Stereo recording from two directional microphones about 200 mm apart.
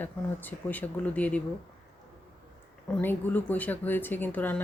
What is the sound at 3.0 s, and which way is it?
Speech, 10° left (ahead or behind).